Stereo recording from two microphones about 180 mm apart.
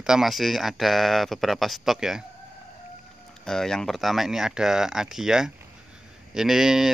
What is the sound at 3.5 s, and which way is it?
Speech, 5° left (ahead or behind).